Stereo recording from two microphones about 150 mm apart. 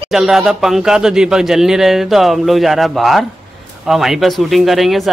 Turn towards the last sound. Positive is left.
turn(degrees=0)  # may be behind; listen again after turning